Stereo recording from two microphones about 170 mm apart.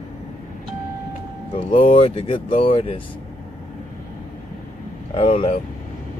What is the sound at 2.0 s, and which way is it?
Speech, 30° left (ahead or behind).